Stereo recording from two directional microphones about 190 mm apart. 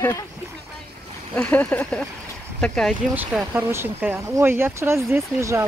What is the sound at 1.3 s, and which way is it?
Speech, 5° left (ahead or behind).